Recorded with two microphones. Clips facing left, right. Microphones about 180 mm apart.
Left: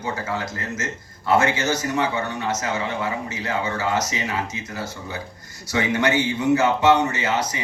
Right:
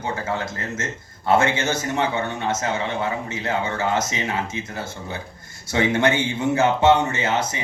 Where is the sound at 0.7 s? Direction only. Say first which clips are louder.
Even; 25° right (ahead or behind).